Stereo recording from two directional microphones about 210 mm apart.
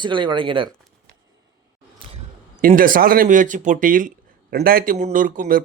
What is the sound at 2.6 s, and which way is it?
Speech, 40° right (ahead or behind).